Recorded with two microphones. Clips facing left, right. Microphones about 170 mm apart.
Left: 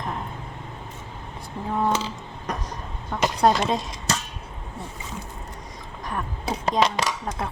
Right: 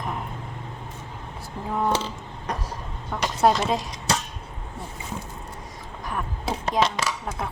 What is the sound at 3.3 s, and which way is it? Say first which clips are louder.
Speech: even; 5° right (ahead or behind).